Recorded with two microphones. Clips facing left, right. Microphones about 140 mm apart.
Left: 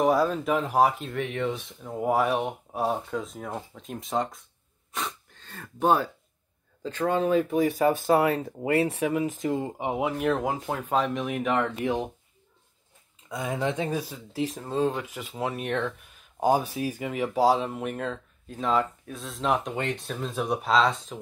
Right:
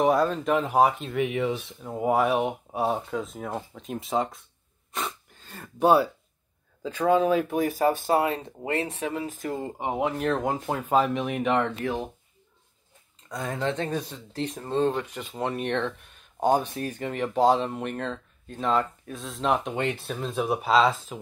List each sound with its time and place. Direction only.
0.0 s speech: centre (ahead or behind)
4.9 s a sound: 5° right (ahead or behind)
7.2 s speech: 80° right
8.1 s speech: 25° right (ahead or behind)
8.7 s speech: 10° left (ahead or behind)
9.8 s speech: 5° left (ahead or behind)
11.8 s speech: 20° left (ahead or behind)
13.3 s speech: 10° left (ahead or behind)